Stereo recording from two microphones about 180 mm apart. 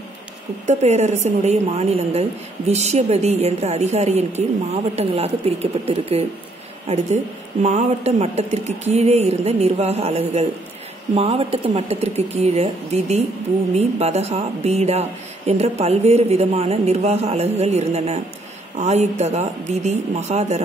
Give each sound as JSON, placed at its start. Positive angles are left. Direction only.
{"t": 0.7, "sound": "speech", "side_deg": -40}
{"t": 7.6, "sound": "speech", "side_deg": -35}